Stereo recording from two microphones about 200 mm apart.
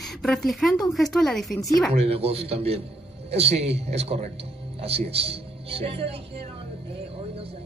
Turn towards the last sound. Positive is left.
turn(degrees=-30)  # may be behind; listen again after turning